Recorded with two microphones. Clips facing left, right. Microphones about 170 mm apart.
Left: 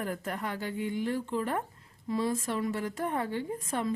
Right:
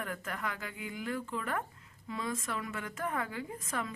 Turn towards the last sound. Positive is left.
turn(degrees=30)  # may be behind; listen again after turning